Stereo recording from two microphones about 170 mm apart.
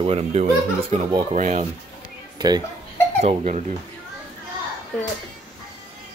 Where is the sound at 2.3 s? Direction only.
25° right (ahead or behind).